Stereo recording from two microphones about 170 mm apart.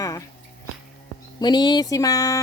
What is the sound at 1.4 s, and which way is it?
A woman's voice, 25° left (ahead or behind).